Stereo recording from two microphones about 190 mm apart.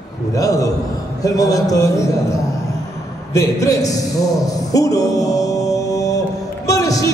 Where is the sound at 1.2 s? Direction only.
20° left (ahead or behind).